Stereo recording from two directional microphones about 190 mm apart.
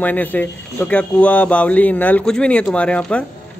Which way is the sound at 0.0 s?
10° left (ahead or behind).